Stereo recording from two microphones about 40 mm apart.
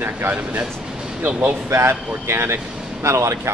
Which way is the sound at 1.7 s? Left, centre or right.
Right.